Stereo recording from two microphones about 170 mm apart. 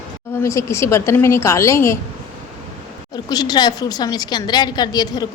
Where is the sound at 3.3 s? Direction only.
25° left (ahead or behind).